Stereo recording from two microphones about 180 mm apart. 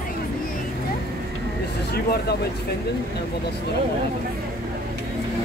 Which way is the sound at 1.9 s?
60° left (ahead or behind).